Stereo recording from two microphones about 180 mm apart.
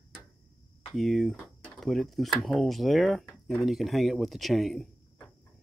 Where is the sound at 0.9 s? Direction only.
Centre (ahead or behind).